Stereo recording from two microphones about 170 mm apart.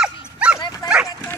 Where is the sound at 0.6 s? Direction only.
20° left (ahead or behind).